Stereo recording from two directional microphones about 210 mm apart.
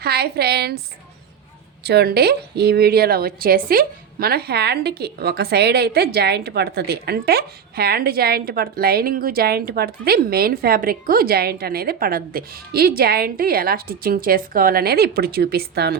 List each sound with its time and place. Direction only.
0.0 s a woman's voice: 50° right (ahead or behind)
1.8 s a woman's voice: 50° right (ahead or behind)